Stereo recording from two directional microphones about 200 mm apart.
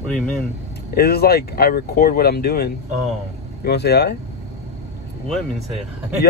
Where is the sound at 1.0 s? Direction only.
50° left (ahead or behind).